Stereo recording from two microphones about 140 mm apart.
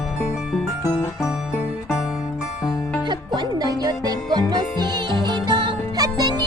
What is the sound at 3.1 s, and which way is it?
Music, 30° right (ahead or behind).